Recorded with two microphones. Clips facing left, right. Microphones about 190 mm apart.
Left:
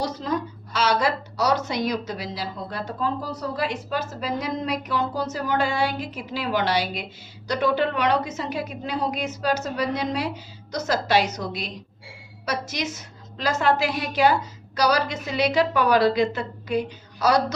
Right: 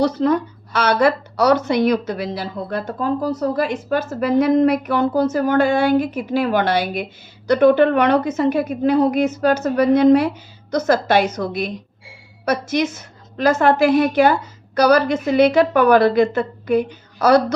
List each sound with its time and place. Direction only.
0.0 s a woman's voice: 60° right (ahead or behind)